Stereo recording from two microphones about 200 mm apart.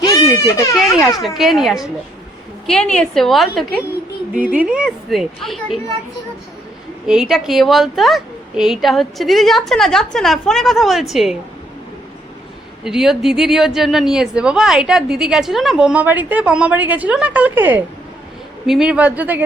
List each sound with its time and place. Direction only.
0.0 s a sound: 15° left (ahead or behind)
1.2 s speech: centre (ahead or behind)
7.1 s speech: centre (ahead or behind)
12.8 s speech: centre (ahead or behind)